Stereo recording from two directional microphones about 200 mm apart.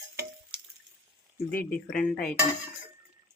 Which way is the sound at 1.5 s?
5° left (ahead or behind).